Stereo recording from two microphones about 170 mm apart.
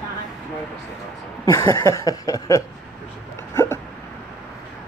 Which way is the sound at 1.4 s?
15° left (ahead or behind).